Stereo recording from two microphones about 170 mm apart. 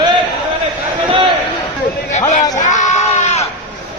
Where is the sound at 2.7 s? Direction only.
45° left (ahead or behind).